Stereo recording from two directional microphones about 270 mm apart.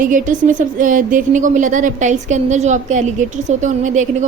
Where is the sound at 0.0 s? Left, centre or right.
Right.